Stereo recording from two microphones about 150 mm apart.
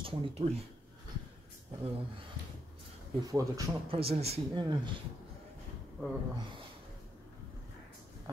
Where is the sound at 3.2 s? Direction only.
25° right (ahead or behind).